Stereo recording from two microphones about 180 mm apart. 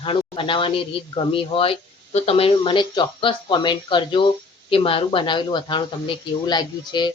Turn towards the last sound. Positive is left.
turn(degrees=25)  # may be behind; listen again after turning